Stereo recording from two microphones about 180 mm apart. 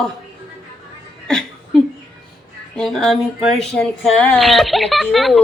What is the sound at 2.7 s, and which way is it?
Speech, centre (ahead or behind).